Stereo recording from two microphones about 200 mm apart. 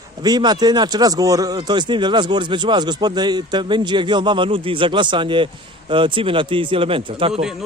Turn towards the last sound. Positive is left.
turn(degrees=-25)  # may be behind; listen again after turning